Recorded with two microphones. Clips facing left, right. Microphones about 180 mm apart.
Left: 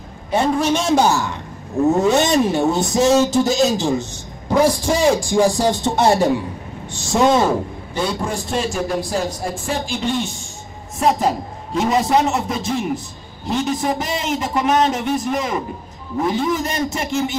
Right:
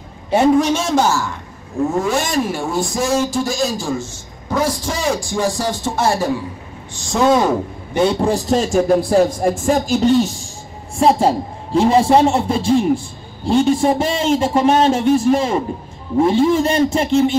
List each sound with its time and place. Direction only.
0.3 s a man's voice: 15° right (ahead or behind)
0.9 s a woman's voice: 15° left (ahead or behind)
7.1 s speech: centre (ahead or behind)
7.9 s a man's voice: 25° right (ahead or behind)